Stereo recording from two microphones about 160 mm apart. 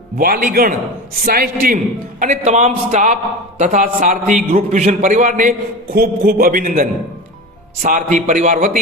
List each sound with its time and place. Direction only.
0.2 s a man's voice: 65° right (ahead or behind)